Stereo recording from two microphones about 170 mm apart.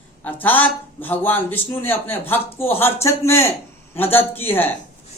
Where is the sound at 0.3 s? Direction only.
10° left (ahead or behind).